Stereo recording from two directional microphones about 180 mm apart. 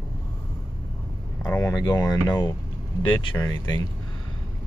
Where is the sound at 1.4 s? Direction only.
15° left (ahead or behind).